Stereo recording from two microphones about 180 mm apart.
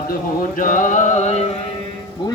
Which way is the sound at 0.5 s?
45° left (ahead or behind).